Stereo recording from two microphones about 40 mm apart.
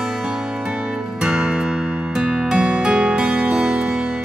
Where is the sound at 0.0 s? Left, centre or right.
Centre.